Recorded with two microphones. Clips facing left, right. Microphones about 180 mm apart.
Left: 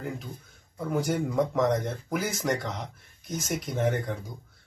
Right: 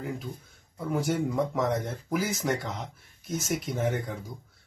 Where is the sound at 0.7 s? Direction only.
Centre (ahead or behind).